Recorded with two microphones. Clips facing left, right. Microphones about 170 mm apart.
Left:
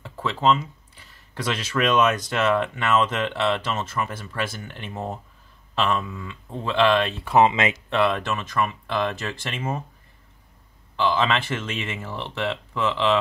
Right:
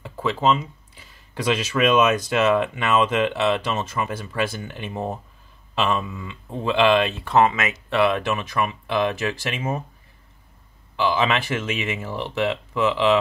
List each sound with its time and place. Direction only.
0.0 s speech: 10° right (ahead or behind)
7.2 s speech: 15° left (ahead or behind)
7.9 s speech: 5° right (ahead or behind)
11.0 s speech: 10° right (ahead or behind)